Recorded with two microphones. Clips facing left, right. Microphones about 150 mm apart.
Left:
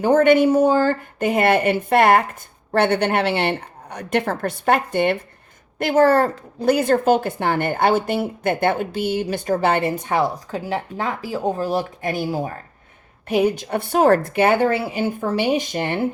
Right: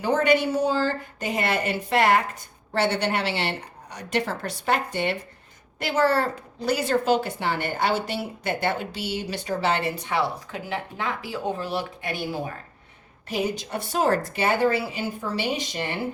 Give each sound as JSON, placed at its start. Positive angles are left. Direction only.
{"t": 0.0, "sound": "a woman's voice", "side_deg": 50}
{"t": 13.2, "sound": "a woman's voice", "side_deg": 55}